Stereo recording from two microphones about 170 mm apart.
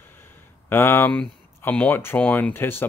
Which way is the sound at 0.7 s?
15° left (ahead or behind).